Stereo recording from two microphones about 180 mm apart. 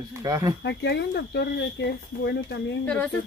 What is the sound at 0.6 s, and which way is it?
Speech, 70° left (ahead or behind).